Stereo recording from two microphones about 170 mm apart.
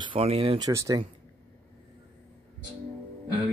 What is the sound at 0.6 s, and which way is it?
Speech, 20° right (ahead or behind).